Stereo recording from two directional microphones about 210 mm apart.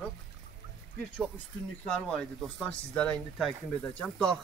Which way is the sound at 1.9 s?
5° left (ahead or behind).